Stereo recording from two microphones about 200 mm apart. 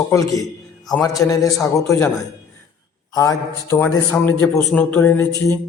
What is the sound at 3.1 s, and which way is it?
Speech, 15° left (ahead or behind).